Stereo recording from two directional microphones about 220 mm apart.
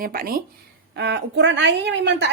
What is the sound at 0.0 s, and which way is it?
Speech, 40° right (ahead or behind).